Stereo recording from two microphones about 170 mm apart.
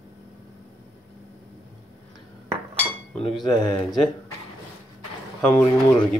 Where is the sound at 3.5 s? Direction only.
25° left (ahead or behind).